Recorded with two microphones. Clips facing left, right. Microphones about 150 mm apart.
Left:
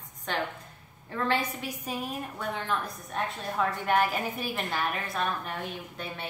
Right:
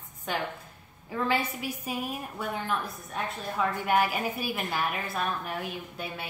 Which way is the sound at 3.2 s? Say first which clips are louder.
Left 1 dB; 5° right (ahead or behind).